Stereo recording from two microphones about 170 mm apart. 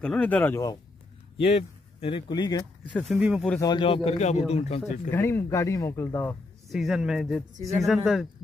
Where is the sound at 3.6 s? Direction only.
25° left (ahead or behind).